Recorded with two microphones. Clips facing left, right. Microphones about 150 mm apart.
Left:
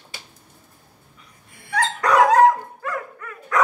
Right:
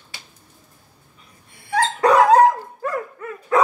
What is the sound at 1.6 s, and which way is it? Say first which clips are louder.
Dog: right 5 dB; 30° right (ahead or behind).